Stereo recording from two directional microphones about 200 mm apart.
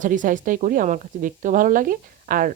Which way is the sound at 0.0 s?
40° right (ahead or behind).